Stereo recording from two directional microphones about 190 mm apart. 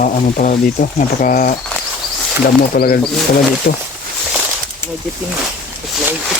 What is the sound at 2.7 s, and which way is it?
Speech, 55° left (ahead or behind).